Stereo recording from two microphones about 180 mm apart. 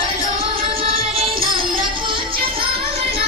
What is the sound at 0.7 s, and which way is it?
Music, 30° right (ahead or behind).